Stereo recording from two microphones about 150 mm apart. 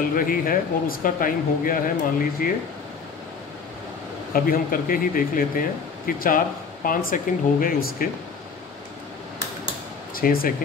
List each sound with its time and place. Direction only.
0.1 s speech: 70° left (ahead or behind)
4.3 s speech: 70° left (ahead or behind)
10.1 s speech: 75° left (ahead or behind)